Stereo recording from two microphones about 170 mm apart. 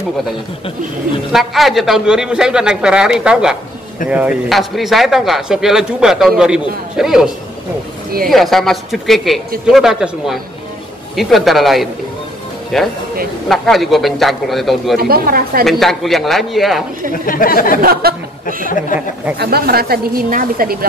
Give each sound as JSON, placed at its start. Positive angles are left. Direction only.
{"t": 1.3, "sound": "speech", "side_deg": 0}
{"t": 8.3, "sound": "speech", "side_deg": 0}
{"t": 15.0, "sound": "a woman's voice", "side_deg": -60}
{"t": 15.6, "sound": "speech", "side_deg": 0}
{"t": 17.3, "sound": "speech", "side_deg": 55}
{"t": 17.8, "sound": "a woman's voice", "side_deg": -60}
{"t": 18.9, "sound": "speech", "side_deg": 50}
{"t": 19.3, "sound": "a woman's voice", "side_deg": -70}